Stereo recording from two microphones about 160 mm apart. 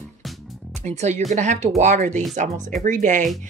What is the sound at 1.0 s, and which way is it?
Speech, 45° right (ahead or behind).